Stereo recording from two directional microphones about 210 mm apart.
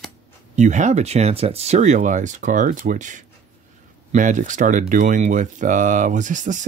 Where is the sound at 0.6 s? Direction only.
35° right (ahead or behind).